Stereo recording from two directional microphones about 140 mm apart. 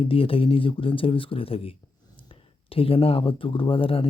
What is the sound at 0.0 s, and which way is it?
Speech, 40° left (ahead or behind).